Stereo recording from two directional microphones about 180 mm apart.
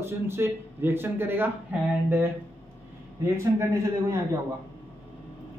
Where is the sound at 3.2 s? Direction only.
15° right (ahead or behind).